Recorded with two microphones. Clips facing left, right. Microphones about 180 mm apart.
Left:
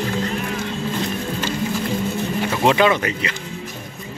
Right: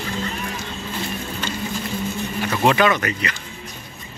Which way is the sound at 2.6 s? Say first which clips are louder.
Left 1 dB; 20° left (ahead or behind).